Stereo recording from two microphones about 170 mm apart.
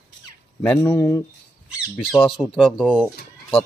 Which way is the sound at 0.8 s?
15° left (ahead or behind).